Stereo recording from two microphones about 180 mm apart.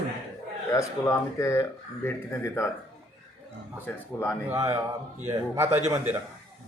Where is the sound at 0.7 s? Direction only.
15° left (ahead or behind).